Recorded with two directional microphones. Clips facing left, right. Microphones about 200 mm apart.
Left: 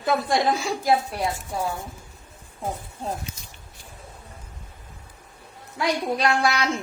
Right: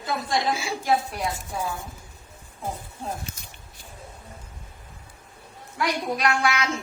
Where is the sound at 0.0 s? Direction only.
60° left (ahead or behind).